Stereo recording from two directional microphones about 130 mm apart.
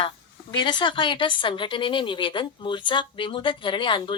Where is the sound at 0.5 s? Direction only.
35° left (ahead or behind).